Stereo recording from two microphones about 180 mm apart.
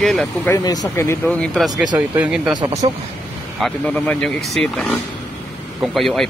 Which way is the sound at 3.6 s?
5° left (ahead or behind).